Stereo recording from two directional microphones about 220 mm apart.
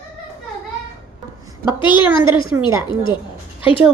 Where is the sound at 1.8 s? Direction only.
20° left (ahead or behind).